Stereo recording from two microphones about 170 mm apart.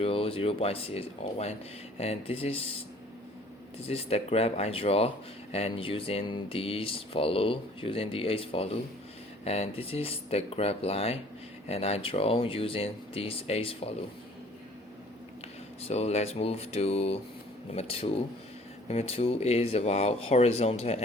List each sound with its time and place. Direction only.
0.0 s speech: 35° left (ahead or behind)
3.8 s speech: 35° left (ahead or behind)
15.8 s speech: 40° left (ahead or behind)